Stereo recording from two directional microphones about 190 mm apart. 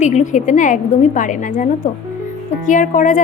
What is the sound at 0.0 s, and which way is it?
A woman's voice, 40° left (ahead or behind).